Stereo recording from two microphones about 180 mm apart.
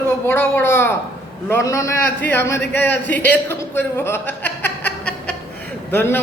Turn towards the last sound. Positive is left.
turn(degrees=10)  # may be behind; listen again after turning